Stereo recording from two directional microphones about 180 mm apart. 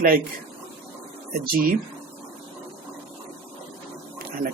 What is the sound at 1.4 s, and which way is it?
Speech, 55° right (ahead or behind).